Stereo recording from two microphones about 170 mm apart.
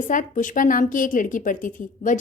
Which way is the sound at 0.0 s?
50° left (ahead or behind).